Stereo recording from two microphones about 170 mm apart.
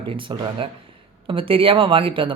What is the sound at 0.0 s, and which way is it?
Speech, 30° right (ahead or behind).